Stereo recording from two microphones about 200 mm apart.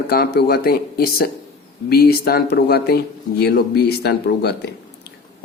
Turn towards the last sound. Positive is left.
turn(degrees=55)  # may be behind; listen again after turning